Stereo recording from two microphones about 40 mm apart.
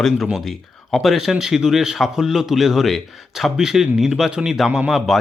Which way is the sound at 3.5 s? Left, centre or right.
Centre.